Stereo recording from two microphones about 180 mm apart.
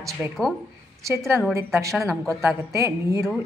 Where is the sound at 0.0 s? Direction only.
20° right (ahead or behind).